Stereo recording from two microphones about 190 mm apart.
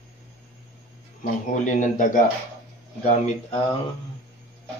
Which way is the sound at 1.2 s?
40° left (ahead or behind).